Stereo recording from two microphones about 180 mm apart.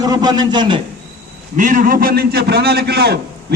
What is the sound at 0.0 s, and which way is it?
Speech, 20° right (ahead or behind).